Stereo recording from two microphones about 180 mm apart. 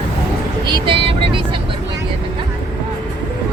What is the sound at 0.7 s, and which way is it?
Vehicle, 25° right (ahead or behind).